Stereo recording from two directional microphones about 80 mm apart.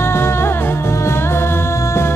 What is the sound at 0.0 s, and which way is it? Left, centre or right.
Music, left.